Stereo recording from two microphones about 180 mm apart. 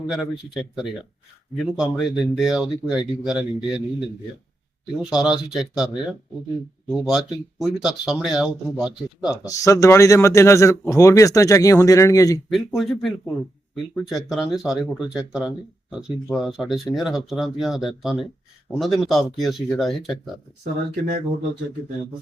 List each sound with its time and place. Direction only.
0.1 s speech: centre (ahead or behind)
5.0 s speech: 5° right (ahead or behind)
9.5 s speech: 15° left (ahead or behind)
12.5 s speech: centre (ahead or behind)